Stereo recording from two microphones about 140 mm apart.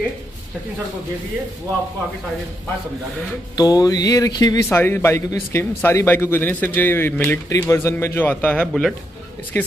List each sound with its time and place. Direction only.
3.5 s a man's voice: 30° left (ahead or behind)